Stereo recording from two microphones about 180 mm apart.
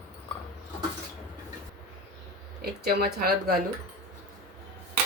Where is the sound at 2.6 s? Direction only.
55° right (ahead or behind).